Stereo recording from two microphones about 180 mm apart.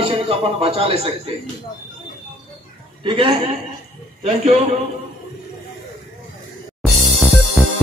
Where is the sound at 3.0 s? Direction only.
25° right (ahead or behind).